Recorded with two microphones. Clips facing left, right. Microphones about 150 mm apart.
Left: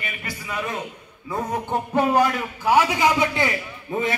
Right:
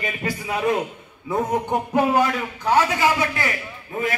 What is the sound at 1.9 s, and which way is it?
Speech, 5° right (ahead or behind).